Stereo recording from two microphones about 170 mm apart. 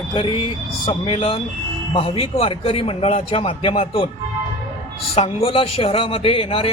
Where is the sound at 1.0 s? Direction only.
35° left (ahead or behind).